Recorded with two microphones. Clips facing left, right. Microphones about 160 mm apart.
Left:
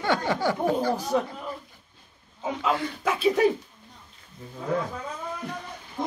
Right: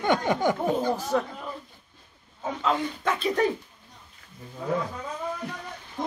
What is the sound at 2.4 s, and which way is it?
Speech, 10° left (ahead or behind).